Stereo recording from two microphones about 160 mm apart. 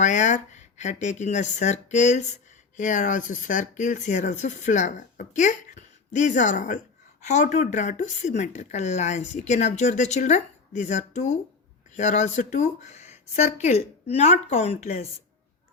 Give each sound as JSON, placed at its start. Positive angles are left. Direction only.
{"t": 0.0, "sound": "speech", "side_deg": 50}